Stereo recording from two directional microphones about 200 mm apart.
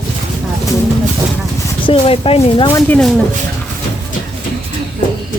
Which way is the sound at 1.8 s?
25° left (ahead or behind).